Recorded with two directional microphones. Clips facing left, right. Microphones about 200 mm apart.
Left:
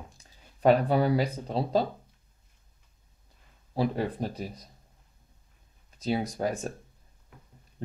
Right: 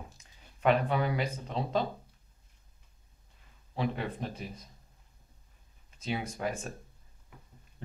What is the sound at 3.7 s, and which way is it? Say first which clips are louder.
Speech: left 5 dB; 35° left (ahead or behind).